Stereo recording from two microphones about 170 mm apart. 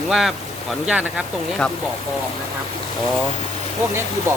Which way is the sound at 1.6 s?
5° left (ahead or behind).